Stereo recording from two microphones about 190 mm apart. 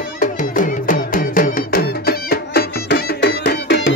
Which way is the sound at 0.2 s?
45° left (ahead or behind).